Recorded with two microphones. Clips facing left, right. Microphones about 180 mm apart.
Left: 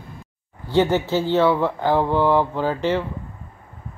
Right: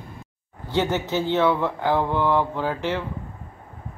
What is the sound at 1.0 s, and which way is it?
Speech, 20° right (ahead or behind).